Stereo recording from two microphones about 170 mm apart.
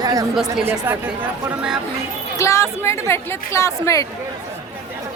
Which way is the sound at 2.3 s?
15° left (ahead or behind).